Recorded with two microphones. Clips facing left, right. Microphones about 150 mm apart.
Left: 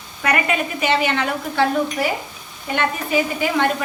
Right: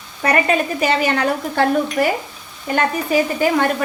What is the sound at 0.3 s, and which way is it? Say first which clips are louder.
Speech: right 4 dB; 40° right (ahead or behind).